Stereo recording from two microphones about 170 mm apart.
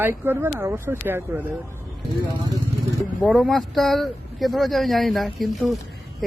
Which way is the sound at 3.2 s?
Centre (ahead or behind).